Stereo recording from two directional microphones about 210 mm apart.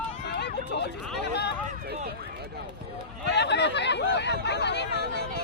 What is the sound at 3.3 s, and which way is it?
Hubbub, 55° left (ahead or behind).